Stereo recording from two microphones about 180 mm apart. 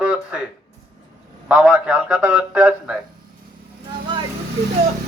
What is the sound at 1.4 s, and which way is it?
A man's voice, 10° right (ahead or behind).